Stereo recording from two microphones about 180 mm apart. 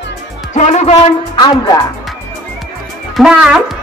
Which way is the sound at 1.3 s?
25° left (ahead or behind).